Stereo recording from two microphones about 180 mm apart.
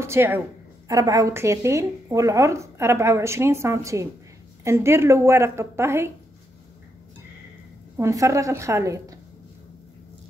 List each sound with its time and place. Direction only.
0.0 s a woman's voice: 15° right (ahead or behind)
8.0 s a woman's voice: 15° right (ahead or behind)